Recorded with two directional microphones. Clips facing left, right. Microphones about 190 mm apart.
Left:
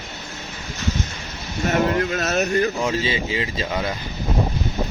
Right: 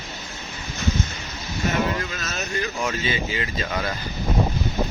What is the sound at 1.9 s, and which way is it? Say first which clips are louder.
Speech: left 9 dB; 60° left (ahead or behind).